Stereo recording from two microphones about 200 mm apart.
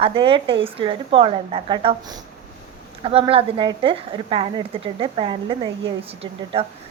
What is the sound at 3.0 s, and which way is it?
A woman's voice, 30° right (ahead or behind).